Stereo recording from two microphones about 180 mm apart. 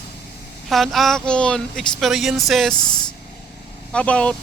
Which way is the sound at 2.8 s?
25° left (ahead or behind).